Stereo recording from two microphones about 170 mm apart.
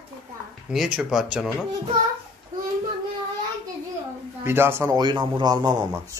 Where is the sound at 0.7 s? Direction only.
5° right (ahead or behind).